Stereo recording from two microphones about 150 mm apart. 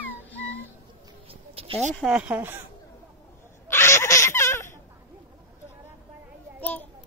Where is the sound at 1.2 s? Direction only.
40° right (ahead or behind).